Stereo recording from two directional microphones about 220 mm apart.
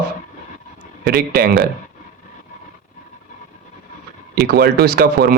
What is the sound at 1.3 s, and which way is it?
Speech, 40° right (ahead or behind).